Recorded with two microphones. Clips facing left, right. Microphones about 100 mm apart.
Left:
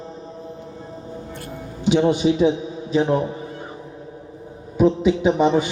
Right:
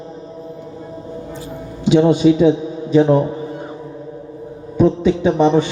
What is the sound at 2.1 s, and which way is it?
Speech, 20° left (ahead or behind).